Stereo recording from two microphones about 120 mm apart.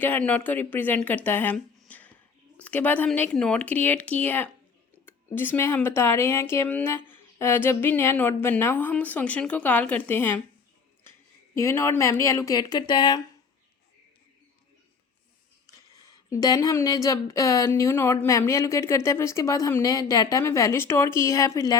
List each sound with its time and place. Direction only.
0.0 s speech: 15° left (ahead or behind)
1.9 s a sound: 15° left (ahead or behind)
2.6 s speech: 15° left (ahead or behind)
11.5 s speech: 25° left (ahead or behind)
15.6 s speech: 30° left (ahead or behind)